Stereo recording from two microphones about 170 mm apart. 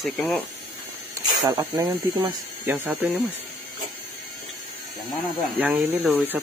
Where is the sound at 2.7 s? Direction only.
10° right (ahead or behind).